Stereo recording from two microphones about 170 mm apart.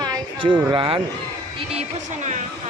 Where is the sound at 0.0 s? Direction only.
25° right (ahead or behind).